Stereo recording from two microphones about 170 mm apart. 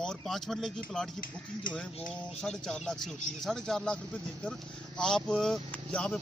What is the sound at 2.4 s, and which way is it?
Speech, 5° left (ahead or behind).